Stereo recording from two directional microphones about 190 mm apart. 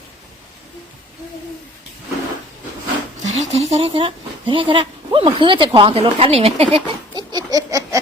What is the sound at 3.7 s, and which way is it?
Speech, 30° right (ahead or behind).